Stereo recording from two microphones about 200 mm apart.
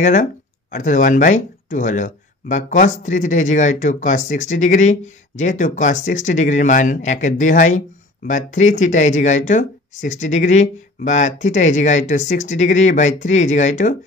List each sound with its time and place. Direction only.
0.0 s speech: 40° left (ahead or behind)